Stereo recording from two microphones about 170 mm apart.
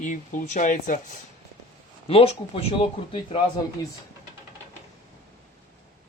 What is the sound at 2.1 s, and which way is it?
Speech, 35° left (ahead or behind).